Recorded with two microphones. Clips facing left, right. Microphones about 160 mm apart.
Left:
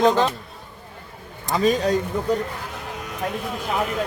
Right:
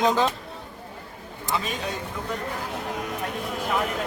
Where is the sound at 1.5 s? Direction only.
40° left (ahead or behind).